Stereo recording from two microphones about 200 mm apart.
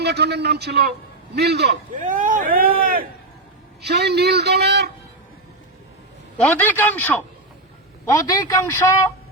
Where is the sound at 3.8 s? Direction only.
55° right (ahead or behind).